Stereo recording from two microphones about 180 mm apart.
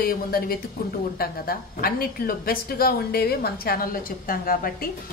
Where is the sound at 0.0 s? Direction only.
55° left (ahead or behind).